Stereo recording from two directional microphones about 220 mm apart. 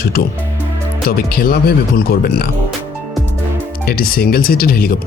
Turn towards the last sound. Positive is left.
turn(degrees=40)  # may be behind; listen again after turning